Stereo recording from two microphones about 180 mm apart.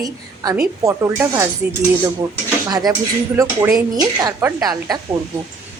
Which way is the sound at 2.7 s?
20° right (ahead or behind).